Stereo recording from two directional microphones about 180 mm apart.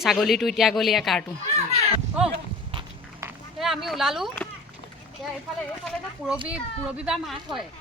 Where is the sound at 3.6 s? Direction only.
Centre (ahead or behind).